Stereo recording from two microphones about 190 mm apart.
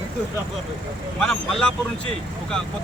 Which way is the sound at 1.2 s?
5° left (ahead or behind).